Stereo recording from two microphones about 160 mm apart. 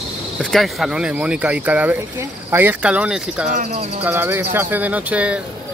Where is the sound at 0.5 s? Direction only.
Centre (ahead or behind).